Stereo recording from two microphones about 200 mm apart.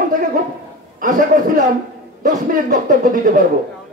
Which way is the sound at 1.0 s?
45° right (ahead or behind).